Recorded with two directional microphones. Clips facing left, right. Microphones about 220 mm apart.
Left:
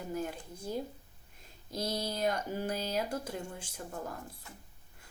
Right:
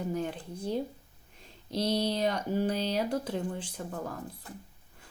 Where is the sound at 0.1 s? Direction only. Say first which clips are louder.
Right 4 dB; 5° left (ahead or behind).